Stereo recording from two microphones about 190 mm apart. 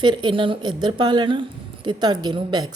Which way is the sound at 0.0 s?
25° right (ahead or behind).